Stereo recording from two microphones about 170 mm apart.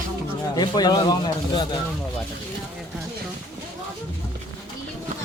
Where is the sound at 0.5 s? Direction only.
25° left (ahead or behind).